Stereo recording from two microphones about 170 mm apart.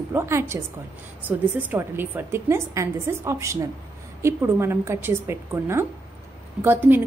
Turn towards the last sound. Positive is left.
turn(degrees=-10)  # may be behind; listen again after turning